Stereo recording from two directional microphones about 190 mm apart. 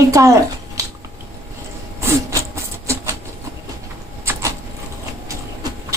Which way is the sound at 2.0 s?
15° right (ahead or behind).